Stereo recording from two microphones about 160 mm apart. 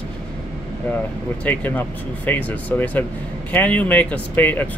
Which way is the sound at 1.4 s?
10° left (ahead or behind).